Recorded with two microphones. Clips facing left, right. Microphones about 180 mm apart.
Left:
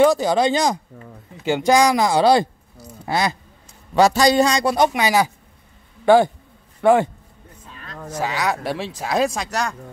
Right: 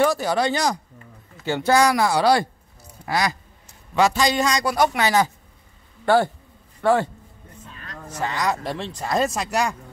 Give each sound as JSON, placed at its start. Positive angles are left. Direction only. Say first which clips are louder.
{"t": 0.0, "sound": "a man's voice", "louder": "left 5 dB", "side_deg": 20}
{"t": 3.9, "sound": "a man's voice", "louder": "left 5 dB", "side_deg": 40}
{"t": 8.2, "sound": "speech", "louder": "left 1 dB", "side_deg": 5}